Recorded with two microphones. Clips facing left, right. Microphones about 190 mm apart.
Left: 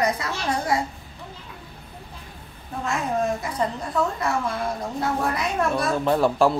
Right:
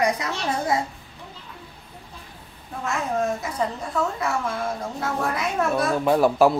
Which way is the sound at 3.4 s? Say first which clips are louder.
Even; centre (ahead or behind).